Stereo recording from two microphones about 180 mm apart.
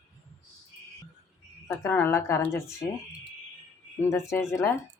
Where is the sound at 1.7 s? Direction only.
15° left (ahead or behind).